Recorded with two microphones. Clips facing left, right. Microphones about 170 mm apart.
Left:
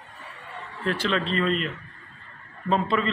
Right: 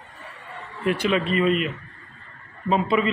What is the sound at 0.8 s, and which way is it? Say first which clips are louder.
A man's voice: right 4 dB; 15° right (ahead or behind).